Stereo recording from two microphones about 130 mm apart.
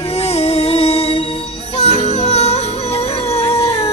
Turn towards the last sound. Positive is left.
turn(degrees=50)  # may be behind; listen again after turning